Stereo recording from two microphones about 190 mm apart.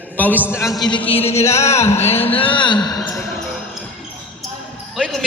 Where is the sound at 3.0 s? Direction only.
10° left (ahead or behind).